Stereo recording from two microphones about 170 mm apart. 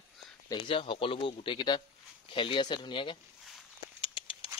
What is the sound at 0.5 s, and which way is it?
Speech, 30° left (ahead or behind).